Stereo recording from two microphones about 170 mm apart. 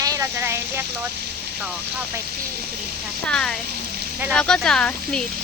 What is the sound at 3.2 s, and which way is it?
Speech, 5° left (ahead or behind).